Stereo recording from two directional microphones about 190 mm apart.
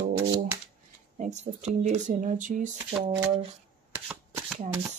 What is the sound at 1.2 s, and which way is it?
Speech, 35° right (ahead or behind).